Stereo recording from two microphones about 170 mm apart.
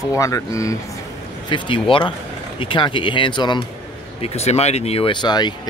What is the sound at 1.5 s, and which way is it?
Speech, 30° left (ahead or behind).